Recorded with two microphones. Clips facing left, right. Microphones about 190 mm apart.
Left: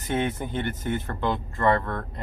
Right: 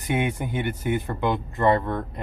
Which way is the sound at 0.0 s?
10° right (ahead or behind).